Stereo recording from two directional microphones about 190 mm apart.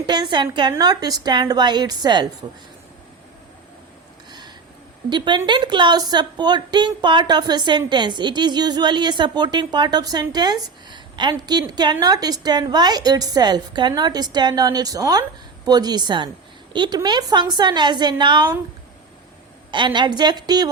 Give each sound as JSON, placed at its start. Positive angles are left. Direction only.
{"t": 0.0, "sound": "a woman's voice", "side_deg": -25}
{"t": 4.3, "sound": "a sound", "side_deg": -20}
{"t": 5.0, "sound": "a woman's voice", "side_deg": -25}
{"t": 19.7, "sound": "a woman's voice", "side_deg": -25}